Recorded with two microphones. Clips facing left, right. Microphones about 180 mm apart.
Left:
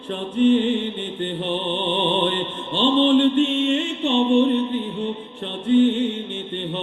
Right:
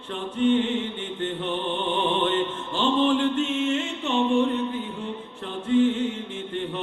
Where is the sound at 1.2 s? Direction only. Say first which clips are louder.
Left 3 dB; 30° left (ahead or behind).